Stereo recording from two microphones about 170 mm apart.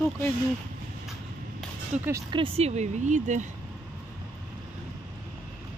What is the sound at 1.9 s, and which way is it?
Speech, 5° right (ahead or behind).